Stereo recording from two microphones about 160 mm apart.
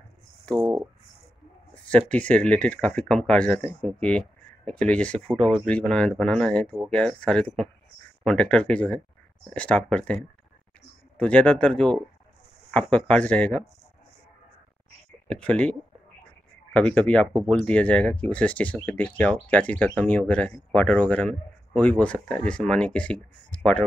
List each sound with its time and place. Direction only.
0.6 s speech: 25° right (ahead or behind)
1.9 s speech: 10° left (ahead or behind)
15.2 s speech: 10° left (ahead or behind)